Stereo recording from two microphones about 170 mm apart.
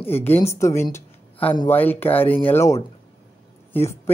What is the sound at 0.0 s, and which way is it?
A woman's voice, 10° left (ahead or behind).